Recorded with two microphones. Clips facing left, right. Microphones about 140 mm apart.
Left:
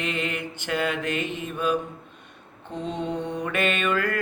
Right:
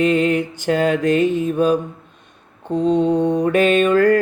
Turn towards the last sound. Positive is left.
turn(degrees=-40)  # may be behind; listen again after turning